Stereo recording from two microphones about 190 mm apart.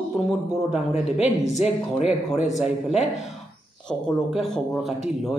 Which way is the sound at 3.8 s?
Centre (ahead or behind).